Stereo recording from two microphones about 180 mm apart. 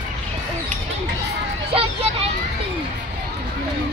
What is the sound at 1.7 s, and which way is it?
Vehicle, 30° right (ahead or behind).